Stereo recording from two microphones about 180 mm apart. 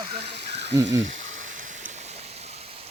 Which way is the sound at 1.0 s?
45° right (ahead or behind).